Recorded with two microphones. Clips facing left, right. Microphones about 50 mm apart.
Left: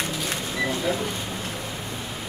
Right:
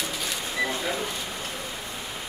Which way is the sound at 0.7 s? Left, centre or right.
Centre.